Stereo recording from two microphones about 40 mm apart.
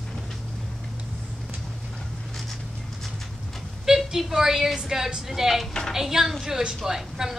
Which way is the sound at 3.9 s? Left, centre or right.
Centre.